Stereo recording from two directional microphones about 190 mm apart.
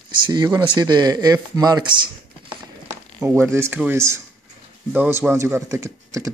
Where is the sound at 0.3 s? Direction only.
20° right (ahead or behind).